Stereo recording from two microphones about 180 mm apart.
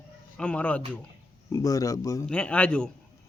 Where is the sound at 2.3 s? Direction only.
5° left (ahead or behind).